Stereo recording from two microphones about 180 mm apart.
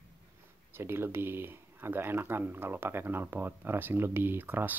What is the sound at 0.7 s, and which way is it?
Speech, 15° right (ahead or behind).